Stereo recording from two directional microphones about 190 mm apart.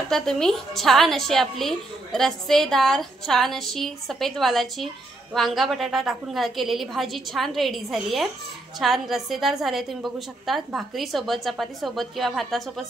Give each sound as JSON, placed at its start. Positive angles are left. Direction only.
{"t": 0.1, "sound": "a woman's voice", "side_deg": 0}